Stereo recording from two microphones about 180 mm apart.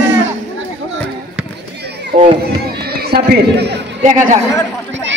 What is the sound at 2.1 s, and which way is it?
A man's voice, 60° right (ahead or behind).